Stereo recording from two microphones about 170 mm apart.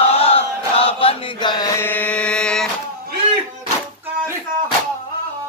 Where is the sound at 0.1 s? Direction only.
35° left (ahead or behind); by 2.7 s 5° left (ahead or behind).